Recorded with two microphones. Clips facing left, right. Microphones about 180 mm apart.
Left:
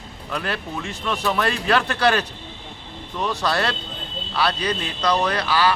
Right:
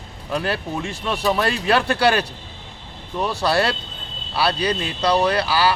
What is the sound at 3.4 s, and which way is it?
Speech, 30° right (ahead or behind).